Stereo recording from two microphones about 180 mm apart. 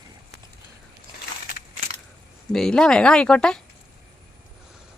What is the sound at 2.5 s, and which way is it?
Speech, 5° left (ahead or behind).